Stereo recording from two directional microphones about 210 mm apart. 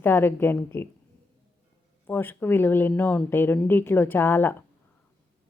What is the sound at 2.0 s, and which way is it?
Speech, 10° left (ahead or behind).